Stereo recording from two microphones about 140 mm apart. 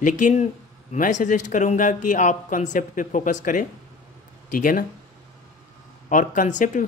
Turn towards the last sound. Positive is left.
turn(degrees=65)  # may be behind; listen again after turning